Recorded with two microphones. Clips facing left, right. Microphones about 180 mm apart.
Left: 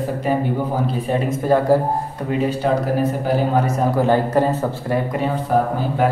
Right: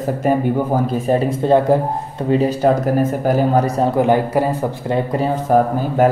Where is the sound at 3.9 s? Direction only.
15° right (ahead or behind).